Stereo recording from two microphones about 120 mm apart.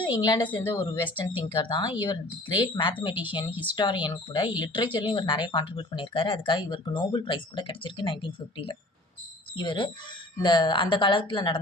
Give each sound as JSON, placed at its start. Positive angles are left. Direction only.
{"t": 0.0, "sound": "speech", "side_deg": 40}
{"t": 0.6, "sound": "a woman's voice", "side_deg": 25}
{"t": 1.5, "sound": "speech", "side_deg": 45}
{"t": 3.5, "sound": "speech", "side_deg": -15}
{"t": 3.8, "sound": "speech", "side_deg": 40}